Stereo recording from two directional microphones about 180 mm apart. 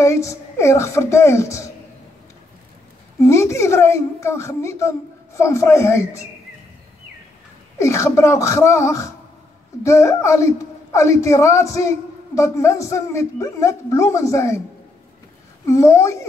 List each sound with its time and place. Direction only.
0.0 s a woman's voice: 15° left (ahead or behind)
3.2 s a woman's voice: 15° left (ahead or behind)
7.8 s a woman's voice: 15° left (ahead or behind)
15.6 s a woman's voice: 15° left (ahead or behind)